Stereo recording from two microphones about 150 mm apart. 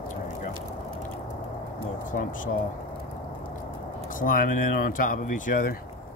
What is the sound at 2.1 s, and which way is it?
Speech, 60° left (ahead or behind).